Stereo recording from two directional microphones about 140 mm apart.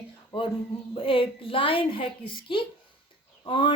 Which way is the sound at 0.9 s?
40° left (ahead or behind).